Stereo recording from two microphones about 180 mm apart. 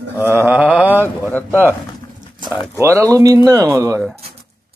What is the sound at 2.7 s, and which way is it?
Speech, 15° right (ahead or behind).